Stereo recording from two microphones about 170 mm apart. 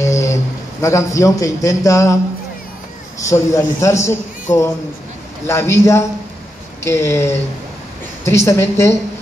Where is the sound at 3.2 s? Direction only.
20° left (ahead or behind).